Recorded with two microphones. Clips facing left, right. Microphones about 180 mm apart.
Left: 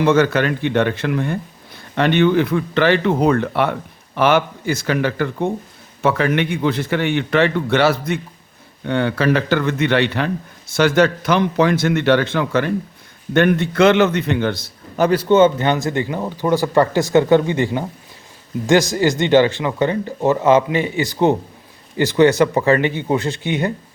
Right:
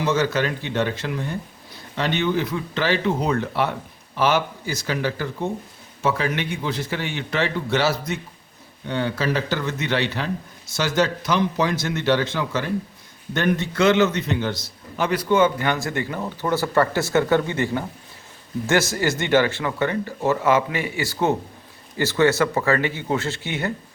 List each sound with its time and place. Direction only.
0.0 s speech: 60° left (ahead or behind)
14.9 s a man's voice: 40° left (ahead or behind)
15.2 s speech: 25° left (ahead or behind)